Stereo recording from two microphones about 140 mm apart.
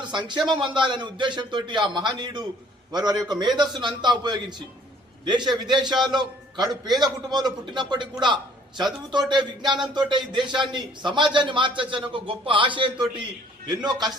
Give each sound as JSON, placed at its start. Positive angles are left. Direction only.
{"t": 0.0, "sound": "a man's voice", "side_deg": -35}